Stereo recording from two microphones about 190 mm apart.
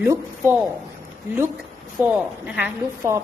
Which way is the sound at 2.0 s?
10° right (ahead or behind).